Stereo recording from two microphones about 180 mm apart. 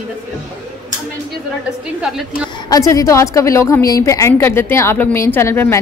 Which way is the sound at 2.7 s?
20° left (ahead or behind).